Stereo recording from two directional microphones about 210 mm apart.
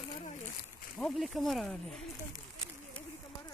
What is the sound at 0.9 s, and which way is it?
Speech, centre (ahead or behind).